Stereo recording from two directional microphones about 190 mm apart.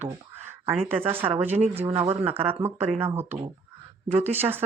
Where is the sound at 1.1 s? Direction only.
10° right (ahead or behind).